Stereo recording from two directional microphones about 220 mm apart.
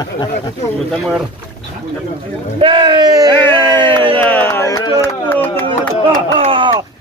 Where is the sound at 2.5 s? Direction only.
25° right (ahead or behind).